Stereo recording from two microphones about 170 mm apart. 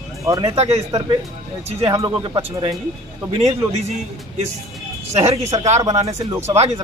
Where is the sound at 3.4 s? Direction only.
40° right (ahead or behind).